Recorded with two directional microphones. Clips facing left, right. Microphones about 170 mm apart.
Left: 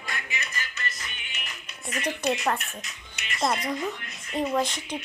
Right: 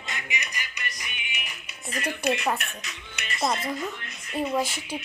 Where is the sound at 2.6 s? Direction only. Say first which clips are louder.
Right 2 dB; 65° right (ahead or behind).